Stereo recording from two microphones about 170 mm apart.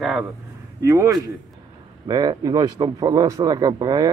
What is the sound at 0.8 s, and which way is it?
A man's voice, 20° right (ahead or behind).